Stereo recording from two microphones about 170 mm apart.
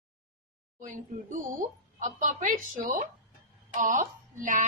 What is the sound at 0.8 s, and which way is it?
Speech, 50° right (ahead or behind).